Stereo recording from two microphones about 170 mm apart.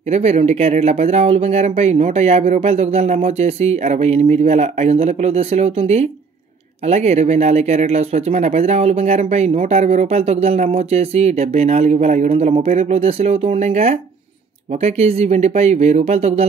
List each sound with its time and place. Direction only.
0.1 s speech: 40° right (ahead or behind)